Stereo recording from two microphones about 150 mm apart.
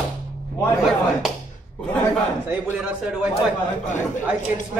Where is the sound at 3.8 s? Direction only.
55° left (ahead or behind).